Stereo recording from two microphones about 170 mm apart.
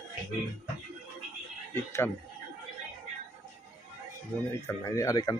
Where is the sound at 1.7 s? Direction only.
15° left (ahead or behind).